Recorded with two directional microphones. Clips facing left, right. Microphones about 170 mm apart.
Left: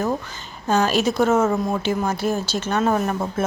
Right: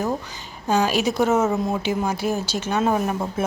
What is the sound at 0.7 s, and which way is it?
Speech, 15° right (ahead or behind).